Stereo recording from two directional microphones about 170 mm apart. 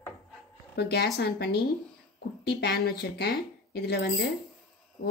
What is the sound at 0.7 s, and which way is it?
Speech, 70° left (ahead or behind).